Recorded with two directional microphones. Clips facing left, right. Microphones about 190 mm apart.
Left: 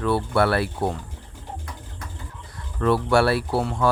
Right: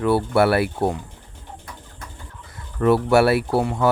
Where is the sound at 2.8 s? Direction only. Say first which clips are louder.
Right 3 dB; 25° right (ahead or behind).